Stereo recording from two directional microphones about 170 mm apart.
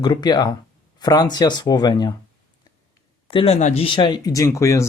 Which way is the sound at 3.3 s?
30° left (ahead or behind).